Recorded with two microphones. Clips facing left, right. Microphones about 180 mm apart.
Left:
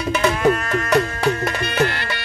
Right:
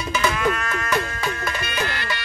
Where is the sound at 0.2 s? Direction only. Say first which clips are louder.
Left 5 dB; 35° left (ahead or behind).